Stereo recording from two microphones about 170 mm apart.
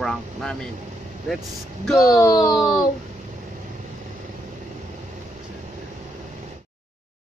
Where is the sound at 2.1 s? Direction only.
20° left (ahead or behind).